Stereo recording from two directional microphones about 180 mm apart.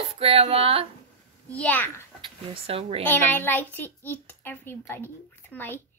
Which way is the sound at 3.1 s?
10° left (ahead or behind).